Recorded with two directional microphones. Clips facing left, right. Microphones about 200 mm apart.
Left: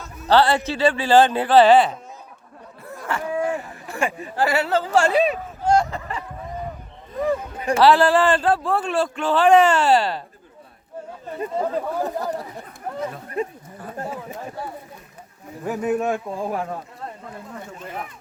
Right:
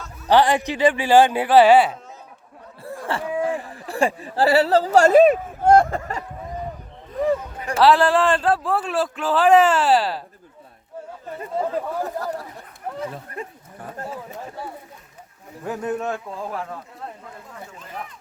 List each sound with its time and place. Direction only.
0.3 s speech: 15° right (ahead or behind)
3.1 s speech: 30° right (ahead or behind)
3.4 s a sound: 30° right (ahead or behind)
7.8 s a man's voice: centre (ahead or behind)
11.5 s a man's voice: 5° right (ahead or behind)
12.0 s speech: 20° left (ahead or behind)
14.0 s a man's voice: 15° left (ahead or behind)
15.6 s a man's voice: 10° left (ahead or behind)